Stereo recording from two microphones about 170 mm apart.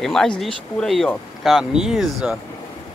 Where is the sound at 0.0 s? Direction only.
Centre (ahead or behind).